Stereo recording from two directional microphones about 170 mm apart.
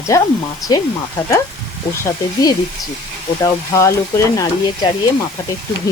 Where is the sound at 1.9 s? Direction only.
20° left (ahead or behind).